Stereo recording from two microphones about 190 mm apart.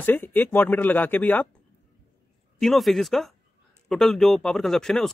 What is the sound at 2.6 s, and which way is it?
Speech, centre (ahead or behind).